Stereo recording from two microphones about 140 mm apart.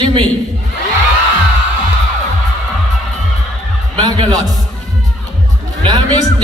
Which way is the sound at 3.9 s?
30° right (ahead or behind).